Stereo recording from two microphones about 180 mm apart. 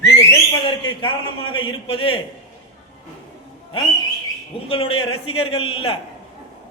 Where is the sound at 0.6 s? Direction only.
25° left (ahead or behind).